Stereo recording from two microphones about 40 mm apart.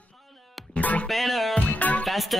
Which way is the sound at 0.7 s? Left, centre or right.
Left.